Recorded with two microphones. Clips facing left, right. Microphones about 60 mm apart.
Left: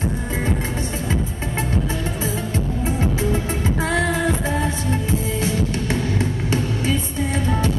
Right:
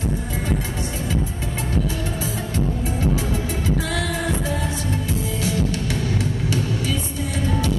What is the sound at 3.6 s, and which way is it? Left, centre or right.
Music, left.